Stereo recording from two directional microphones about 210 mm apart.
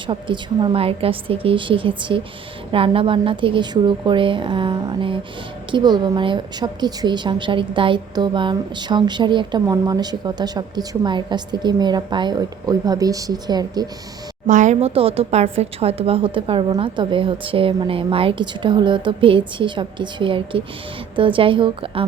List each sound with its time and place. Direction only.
0.1 s a woman's voice: 25° right (ahead or behind)
14.4 s a woman's voice: 35° right (ahead or behind)